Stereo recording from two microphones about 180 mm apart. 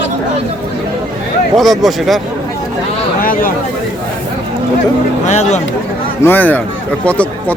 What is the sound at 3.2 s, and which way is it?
Speech, 50° left (ahead or behind).